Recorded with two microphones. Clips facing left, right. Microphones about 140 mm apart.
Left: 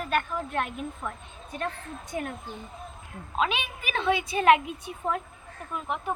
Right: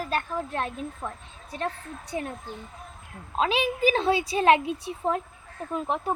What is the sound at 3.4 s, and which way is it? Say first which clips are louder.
A child's voice: right 4 dB; 35° right (ahead or behind).